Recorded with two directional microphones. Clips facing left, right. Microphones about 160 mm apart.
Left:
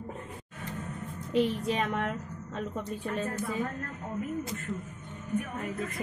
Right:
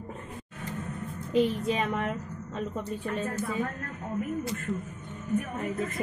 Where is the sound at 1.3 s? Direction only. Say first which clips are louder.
Right 2 dB; centre (ahead or behind).